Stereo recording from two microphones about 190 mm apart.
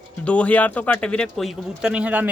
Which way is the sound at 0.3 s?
5° left (ahead or behind).